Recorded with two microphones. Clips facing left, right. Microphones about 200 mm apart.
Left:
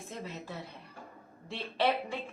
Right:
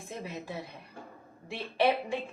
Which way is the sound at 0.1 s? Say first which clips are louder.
Right 3 dB; 15° right (ahead or behind).